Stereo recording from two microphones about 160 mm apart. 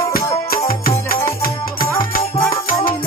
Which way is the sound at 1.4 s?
65° left (ahead or behind).